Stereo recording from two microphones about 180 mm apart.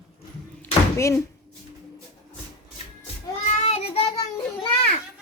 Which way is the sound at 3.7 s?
35° left (ahead or behind).